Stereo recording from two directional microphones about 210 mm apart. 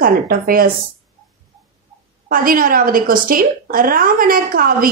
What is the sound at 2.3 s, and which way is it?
A woman's voice, 40° right (ahead or behind).